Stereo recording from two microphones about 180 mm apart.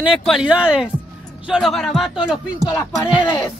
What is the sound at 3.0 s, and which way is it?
Speech, 20° left (ahead or behind).